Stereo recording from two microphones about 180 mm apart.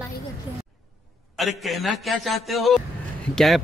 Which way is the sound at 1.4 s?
Centre (ahead or behind).